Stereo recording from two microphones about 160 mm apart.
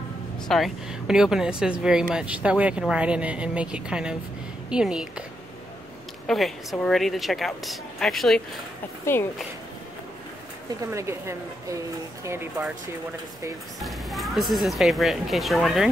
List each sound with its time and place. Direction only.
0.5 s a woman's voice: centre (ahead or behind)
6.2 s speech: centre (ahead or behind)
9.0 s speech: 15° left (ahead or behind)
10.9 s a woman's voice: 15° right (ahead or behind)
13.7 s speech: centre (ahead or behind)